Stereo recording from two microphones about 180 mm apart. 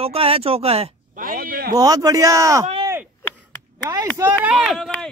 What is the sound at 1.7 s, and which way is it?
Speech, 20° right (ahead or behind).